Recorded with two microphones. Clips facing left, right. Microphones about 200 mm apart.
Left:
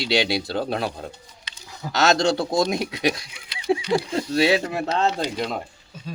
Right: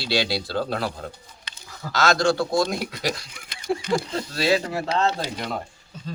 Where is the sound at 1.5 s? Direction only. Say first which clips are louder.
Right 1 dB; 50° right (ahead or behind).